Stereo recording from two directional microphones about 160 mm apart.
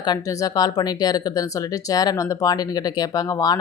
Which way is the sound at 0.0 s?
25° left (ahead or behind).